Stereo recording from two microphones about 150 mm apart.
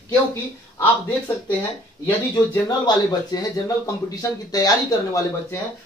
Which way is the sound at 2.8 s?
25° left (ahead or behind).